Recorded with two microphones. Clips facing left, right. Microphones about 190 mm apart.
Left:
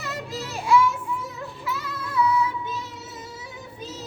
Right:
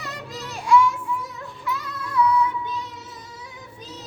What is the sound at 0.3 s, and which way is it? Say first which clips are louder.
Music: left 2 dB; 25° left (ahead or behind).